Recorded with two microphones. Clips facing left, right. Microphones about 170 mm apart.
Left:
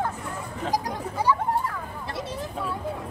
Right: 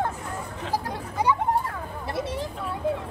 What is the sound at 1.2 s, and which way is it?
Children playing, 20° right (ahead or behind).